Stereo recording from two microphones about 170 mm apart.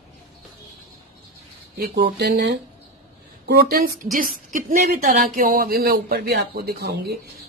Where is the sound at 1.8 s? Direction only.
70° right (ahead or behind).